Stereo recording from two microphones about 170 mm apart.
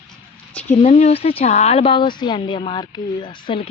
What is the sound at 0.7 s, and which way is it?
Speech, 35° left (ahead or behind).